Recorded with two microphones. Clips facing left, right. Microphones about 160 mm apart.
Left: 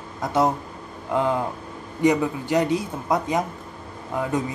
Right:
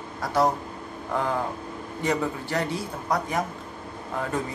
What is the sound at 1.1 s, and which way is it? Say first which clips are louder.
Speech: left 4 dB; 20° left (ahead or behind).